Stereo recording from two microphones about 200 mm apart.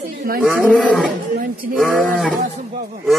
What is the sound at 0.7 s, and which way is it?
Speech, 5° left (ahead or behind).